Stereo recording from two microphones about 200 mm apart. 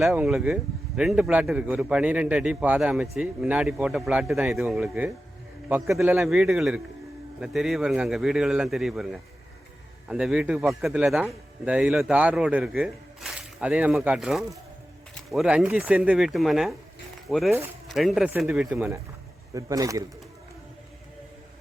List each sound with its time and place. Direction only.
0.0 s a man's voice: centre (ahead or behind)
19.5 s speech: 15° right (ahead or behind)